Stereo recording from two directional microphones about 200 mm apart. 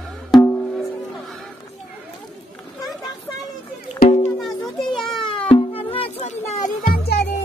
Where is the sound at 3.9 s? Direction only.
50° left (ahead or behind).